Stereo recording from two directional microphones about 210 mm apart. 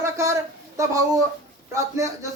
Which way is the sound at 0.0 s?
15° right (ahead or behind).